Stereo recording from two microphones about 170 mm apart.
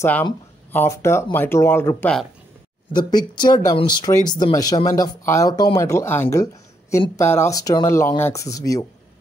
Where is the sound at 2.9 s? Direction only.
25° left (ahead or behind).